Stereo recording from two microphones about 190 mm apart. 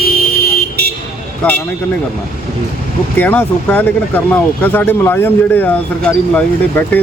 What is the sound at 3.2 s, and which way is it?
Speech, 10° left (ahead or behind).